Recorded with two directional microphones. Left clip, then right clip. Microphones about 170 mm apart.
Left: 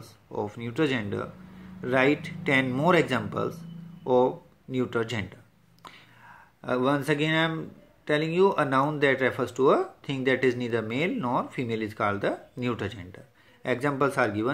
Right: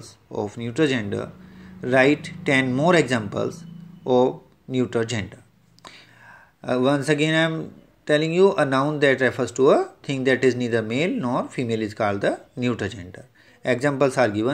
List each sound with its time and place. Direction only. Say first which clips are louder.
0.0 s speech: right 4 dB; 15° right (ahead or behind)